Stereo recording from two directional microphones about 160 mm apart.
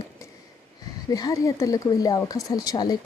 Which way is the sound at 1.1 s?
20° left (ahead or behind).